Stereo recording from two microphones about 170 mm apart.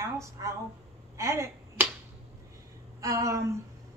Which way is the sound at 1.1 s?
15° right (ahead or behind).